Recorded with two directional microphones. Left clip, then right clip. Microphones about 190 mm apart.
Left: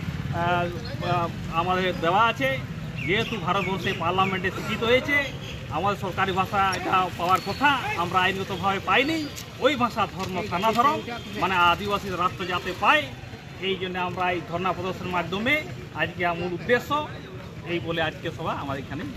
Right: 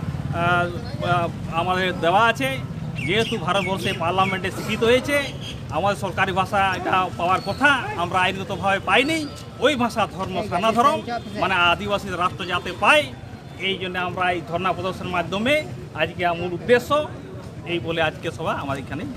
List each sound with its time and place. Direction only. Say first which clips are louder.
0.4 s speech: right 4 dB; 25° right (ahead or behind)